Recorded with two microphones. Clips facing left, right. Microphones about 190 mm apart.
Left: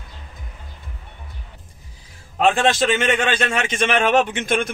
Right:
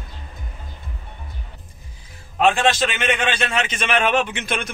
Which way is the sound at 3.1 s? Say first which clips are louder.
Left 2 dB; 45° left (ahead or behind).